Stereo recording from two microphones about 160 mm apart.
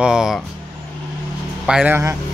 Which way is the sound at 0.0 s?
5° right (ahead or behind).